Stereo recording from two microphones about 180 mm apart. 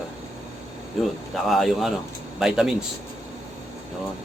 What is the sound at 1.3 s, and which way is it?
Speech, centre (ahead or behind).